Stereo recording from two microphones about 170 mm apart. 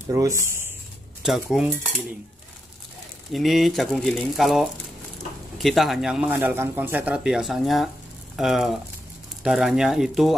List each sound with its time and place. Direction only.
0.1 s speech: 15° right (ahead or behind)
1.2 s speech: centre (ahead or behind)
3.3 s speech: centre (ahead or behind)